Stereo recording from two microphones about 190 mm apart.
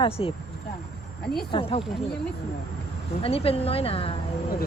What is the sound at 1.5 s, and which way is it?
Speech, 25° left (ahead or behind).